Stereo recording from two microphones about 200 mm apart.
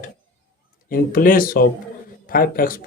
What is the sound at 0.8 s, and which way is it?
Speech, 45° left (ahead or behind).